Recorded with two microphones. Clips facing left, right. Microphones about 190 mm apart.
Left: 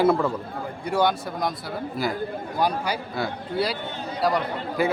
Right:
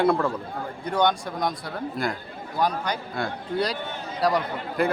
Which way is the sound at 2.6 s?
10° left (ahead or behind).